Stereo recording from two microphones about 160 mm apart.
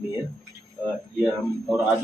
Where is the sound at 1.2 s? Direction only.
10° right (ahead or behind).